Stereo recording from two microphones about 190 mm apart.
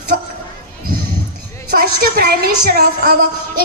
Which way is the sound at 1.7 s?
55° right (ahead or behind).